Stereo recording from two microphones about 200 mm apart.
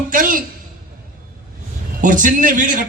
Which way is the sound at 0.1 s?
45° right (ahead or behind).